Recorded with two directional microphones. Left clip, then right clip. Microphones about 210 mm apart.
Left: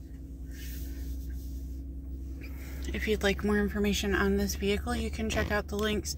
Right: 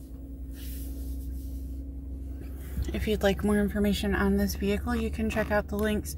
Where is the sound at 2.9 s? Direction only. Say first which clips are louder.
Right 2 dB; 30° right (ahead or behind).